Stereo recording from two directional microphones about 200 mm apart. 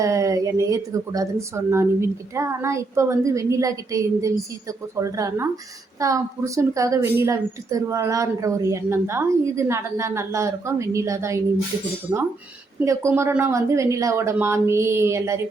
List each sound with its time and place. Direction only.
0.0 s a woman's voice: 15° right (ahead or behind)
12.8 s a woman's voice: 15° right (ahead or behind)